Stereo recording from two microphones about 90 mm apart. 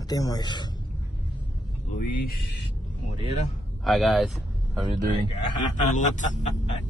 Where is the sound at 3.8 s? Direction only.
Centre (ahead or behind).